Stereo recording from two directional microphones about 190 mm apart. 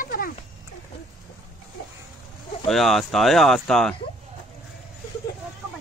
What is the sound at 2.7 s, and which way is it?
Speech, centre (ahead or behind).